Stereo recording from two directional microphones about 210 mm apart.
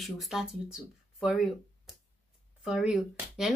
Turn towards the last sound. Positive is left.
turn(degrees=0)  # may be behind; listen again after turning